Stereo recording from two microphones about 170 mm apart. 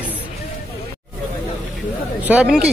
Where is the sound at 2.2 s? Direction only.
5° right (ahead or behind).